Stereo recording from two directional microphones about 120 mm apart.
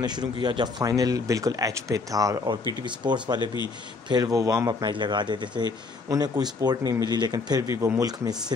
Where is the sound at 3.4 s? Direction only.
40° left (ahead or behind).